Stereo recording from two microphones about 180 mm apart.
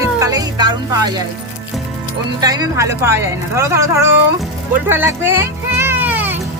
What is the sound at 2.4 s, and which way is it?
Speech, 20° right (ahead or behind).